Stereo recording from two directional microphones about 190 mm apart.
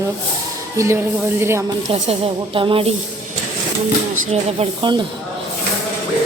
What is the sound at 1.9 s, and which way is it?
Speech, 30° right (ahead or behind).